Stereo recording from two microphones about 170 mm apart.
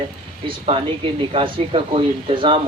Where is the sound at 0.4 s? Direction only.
35° right (ahead or behind).